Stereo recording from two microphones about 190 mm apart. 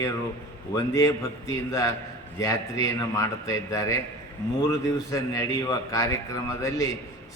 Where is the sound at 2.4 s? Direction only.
20° left (ahead or behind).